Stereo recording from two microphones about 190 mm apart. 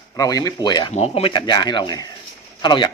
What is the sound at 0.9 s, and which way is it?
Speech, 35° left (ahead or behind).